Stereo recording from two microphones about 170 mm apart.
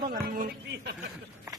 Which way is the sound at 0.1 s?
60° right (ahead or behind).